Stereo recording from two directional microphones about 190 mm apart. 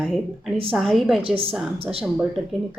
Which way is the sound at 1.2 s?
30° right (ahead or behind).